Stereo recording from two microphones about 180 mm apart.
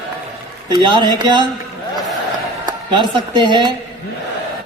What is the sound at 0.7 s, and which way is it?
Speech, 25° right (ahead or behind).